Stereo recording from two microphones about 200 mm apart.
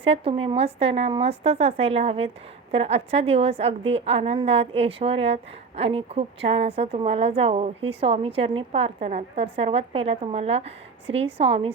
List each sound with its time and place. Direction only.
0.0 s a woman's voice: 30° right (ahead or behind)